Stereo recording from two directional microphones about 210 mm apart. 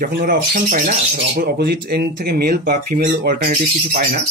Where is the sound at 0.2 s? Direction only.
40° right (ahead or behind).